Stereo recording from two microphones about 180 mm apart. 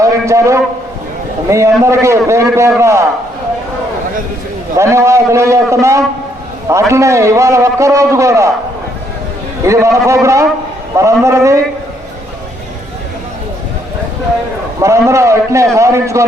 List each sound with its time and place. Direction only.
0.0 s a sound: 15° right (ahead or behind)
1.5 s a man's voice: 15° right (ahead or behind)
4.8 s a man's voice: 15° right (ahead or behind)
9.6 s a man's voice: 15° right (ahead or behind)
14.8 s a man's voice: 15° right (ahead or behind)